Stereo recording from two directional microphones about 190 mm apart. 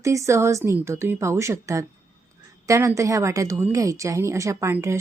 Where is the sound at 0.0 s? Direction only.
15° right (ahead or behind).